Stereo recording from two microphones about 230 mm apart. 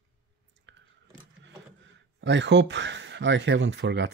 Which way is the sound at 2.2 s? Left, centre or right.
Right.